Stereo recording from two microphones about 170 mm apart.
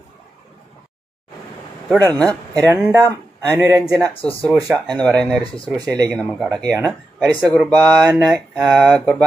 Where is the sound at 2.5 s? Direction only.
20° right (ahead or behind).